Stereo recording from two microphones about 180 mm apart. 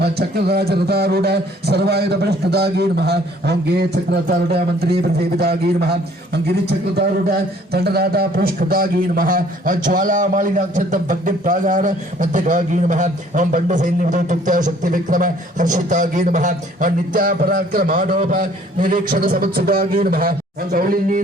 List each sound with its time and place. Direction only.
0.0 s a man's voice: 65° right (ahead or behind)